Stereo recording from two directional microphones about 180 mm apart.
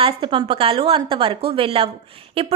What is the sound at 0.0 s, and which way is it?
A woman's voice, 30° right (ahead or behind).